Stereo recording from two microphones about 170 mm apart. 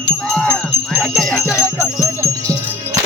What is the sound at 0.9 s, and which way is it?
Music, centre (ahead or behind).